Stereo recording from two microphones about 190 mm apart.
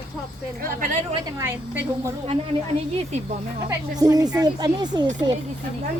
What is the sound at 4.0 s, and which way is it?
Speech, 20° right (ahead or behind).